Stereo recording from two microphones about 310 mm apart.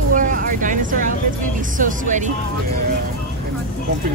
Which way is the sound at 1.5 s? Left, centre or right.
Right.